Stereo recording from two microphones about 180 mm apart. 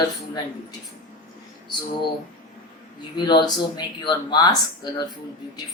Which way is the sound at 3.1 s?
25° left (ahead or behind).